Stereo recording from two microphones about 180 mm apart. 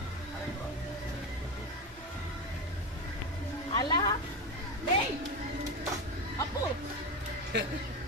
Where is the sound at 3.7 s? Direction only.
25° left (ahead or behind).